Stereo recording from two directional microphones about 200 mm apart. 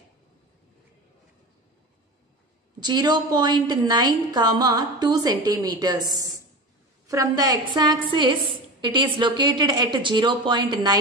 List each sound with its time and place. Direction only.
2.8 s a woman's voice: 20° right (ahead or behind)